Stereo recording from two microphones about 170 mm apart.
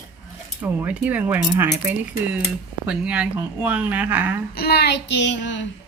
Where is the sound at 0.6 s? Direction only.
10° right (ahead or behind).